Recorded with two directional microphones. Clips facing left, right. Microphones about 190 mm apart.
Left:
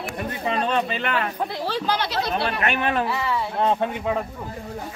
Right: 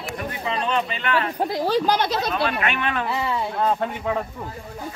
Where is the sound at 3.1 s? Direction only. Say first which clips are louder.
Even; 20° right (ahead or behind).